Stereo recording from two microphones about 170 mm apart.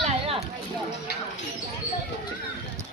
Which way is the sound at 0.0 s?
35° right (ahead or behind).